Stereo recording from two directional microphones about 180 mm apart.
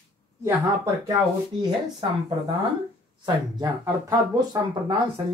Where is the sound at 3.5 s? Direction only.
20° right (ahead or behind).